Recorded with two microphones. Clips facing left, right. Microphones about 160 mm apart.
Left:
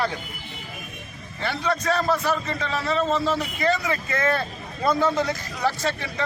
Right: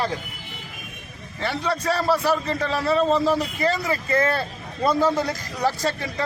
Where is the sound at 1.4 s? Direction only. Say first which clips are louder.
Even; 35° right (ahead or behind).